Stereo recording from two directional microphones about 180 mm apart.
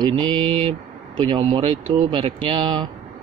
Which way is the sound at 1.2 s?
30° right (ahead or behind).